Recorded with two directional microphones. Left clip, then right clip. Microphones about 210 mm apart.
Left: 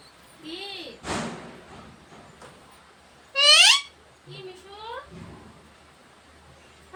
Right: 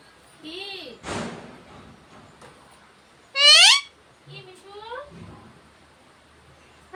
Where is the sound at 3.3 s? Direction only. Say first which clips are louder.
Right 2 dB; 25° right (ahead or behind).